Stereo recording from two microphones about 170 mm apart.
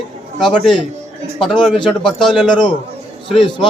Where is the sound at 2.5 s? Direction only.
25° left (ahead or behind).